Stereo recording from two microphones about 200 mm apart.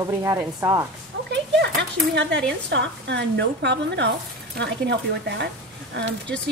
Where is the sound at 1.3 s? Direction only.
60° right (ahead or behind).